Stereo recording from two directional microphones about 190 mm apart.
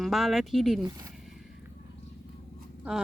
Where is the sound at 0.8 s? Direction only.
20° right (ahead or behind).